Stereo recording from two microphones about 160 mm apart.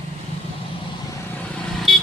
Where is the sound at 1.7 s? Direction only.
Centre (ahead or behind).